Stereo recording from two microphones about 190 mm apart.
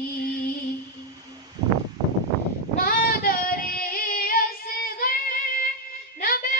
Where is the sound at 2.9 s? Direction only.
50° left (ahead or behind).